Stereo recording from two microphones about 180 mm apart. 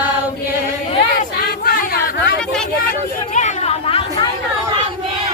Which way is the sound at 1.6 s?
55° left (ahead or behind).